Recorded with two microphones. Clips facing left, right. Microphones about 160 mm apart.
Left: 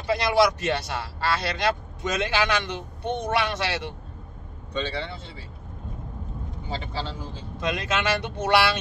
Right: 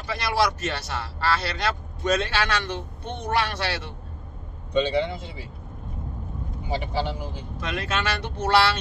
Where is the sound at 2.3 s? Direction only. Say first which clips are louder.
Left 1 dB; 20° left (ahead or behind).